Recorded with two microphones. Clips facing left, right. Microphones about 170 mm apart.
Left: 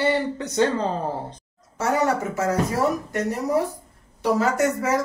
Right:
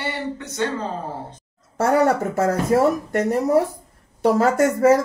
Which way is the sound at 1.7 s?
55° right (ahead or behind).